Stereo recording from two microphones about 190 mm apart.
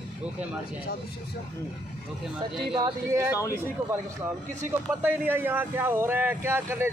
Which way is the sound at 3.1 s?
15° right (ahead or behind).